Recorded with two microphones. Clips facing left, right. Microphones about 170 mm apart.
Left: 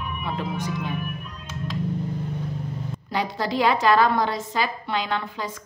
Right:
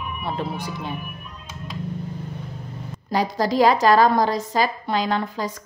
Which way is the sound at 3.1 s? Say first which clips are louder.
Right 5 dB; 40° right (ahead or behind).